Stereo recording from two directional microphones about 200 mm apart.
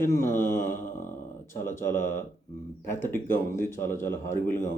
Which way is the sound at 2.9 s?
10° left (ahead or behind).